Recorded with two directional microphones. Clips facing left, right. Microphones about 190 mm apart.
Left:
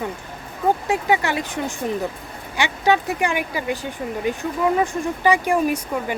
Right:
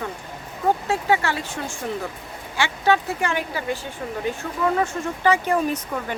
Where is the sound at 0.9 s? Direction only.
15° left (ahead or behind).